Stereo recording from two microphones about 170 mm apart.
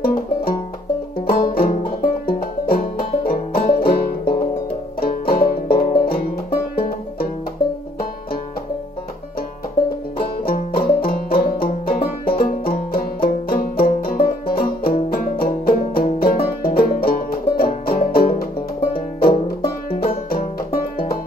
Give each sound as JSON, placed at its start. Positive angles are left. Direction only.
{"t": 0.0, "sound": "music", "side_deg": 60}
{"t": 1.2, "sound": "banjo", "side_deg": 60}
{"t": 3.3, "sound": "music", "side_deg": 60}
{"t": 5.3, "sound": "music", "side_deg": 60}
{"t": 10.1, "sound": "banjo", "side_deg": 60}
{"t": 16.6, "sound": "music", "side_deg": 60}
{"t": 18.9, "sound": "banjo", "side_deg": 60}